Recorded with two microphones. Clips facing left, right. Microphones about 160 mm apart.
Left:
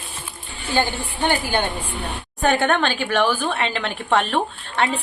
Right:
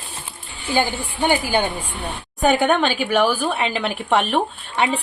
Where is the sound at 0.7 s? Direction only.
10° right (ahead or behind).